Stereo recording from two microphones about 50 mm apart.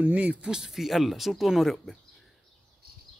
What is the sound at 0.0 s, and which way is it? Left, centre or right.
Speech, right.